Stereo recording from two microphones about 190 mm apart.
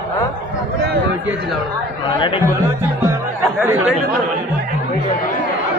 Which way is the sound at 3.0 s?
15° right (ahead or behind).